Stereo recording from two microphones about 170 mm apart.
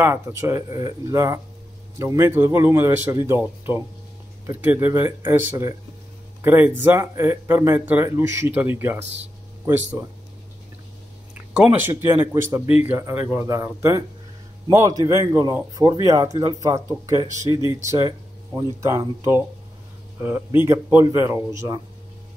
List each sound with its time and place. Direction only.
0.0 s speech: 15° right (ahead or behind)
11.5 s speech: 10° right (ahead or behind)
17.5 s speech: 30° left (ahead or behind)
17.8 s speech: 20° right (ahead or behind)